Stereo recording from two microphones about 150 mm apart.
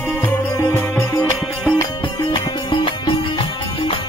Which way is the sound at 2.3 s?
30° left (ahead or behind).